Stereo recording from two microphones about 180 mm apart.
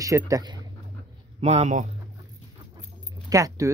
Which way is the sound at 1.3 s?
40° right (ahead or behind).